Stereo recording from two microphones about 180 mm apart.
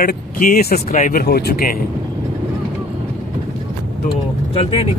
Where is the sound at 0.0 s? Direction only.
50° left (ahead or behind).